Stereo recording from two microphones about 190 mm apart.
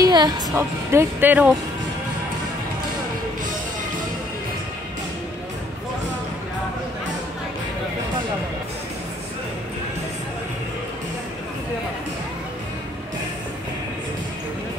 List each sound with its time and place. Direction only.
0.0 s music: 25° right (ahead or behind)
0.6 s speech: 10° right (ahead or behind)